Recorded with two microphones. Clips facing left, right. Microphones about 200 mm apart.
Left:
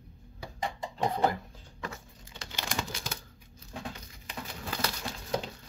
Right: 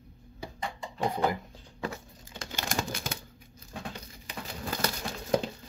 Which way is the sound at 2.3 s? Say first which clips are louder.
Right 3 dB; 50° right (ahead or behind).